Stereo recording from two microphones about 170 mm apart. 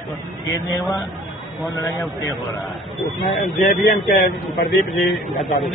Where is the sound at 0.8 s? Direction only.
25° left (ahead or behind).